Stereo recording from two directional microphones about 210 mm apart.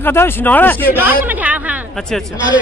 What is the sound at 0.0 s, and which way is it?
Speech, 10° left (ahead or behind).